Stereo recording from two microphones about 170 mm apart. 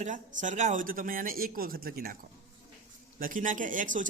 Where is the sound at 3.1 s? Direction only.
55° right (ahead or behind).